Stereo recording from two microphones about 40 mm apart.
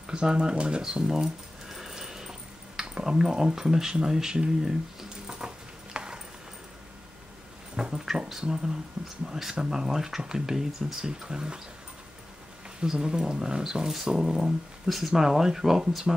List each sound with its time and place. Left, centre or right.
0.0 s speech: right
0.8 s a sound: centre
2.8 s speech: centre
5.2 s dog: centre
5.9 s clip-clop: right
7.7 s speech: centre
12.8 s speech: centre